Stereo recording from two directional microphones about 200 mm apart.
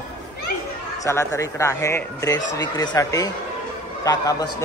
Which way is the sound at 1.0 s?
15° left (ahead or behind).